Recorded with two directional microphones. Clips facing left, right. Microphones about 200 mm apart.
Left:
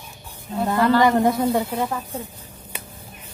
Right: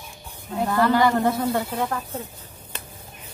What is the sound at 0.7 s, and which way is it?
Speech, 20° left (ahead or behind).